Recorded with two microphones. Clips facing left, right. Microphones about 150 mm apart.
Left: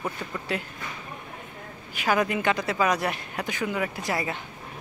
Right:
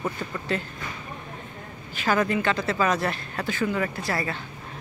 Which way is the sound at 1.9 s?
15° left (ahead or behind).